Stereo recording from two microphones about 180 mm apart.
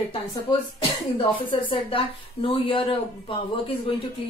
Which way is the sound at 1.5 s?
30° left (ahead or behind).